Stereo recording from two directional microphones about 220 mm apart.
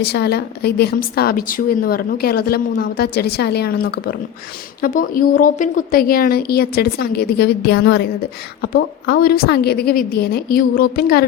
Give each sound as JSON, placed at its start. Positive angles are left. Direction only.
{"t": 0.0, "sound": "a woman's voice", "side_deg": 50}